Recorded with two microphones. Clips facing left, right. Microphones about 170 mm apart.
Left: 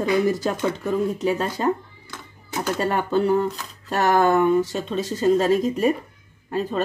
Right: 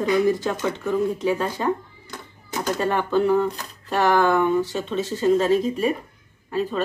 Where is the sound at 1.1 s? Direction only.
40° left (ahead or behind).